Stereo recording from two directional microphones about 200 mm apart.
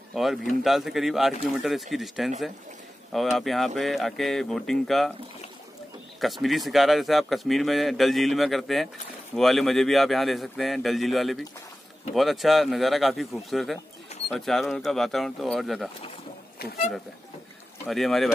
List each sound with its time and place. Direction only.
0.1 s speech: centre (ahead or behind)
6.2 s speech: centre (ahead or behind)
16.5 s speech: 50° left (ahead or behind)
17.8 s speech: centre (ahead or behind)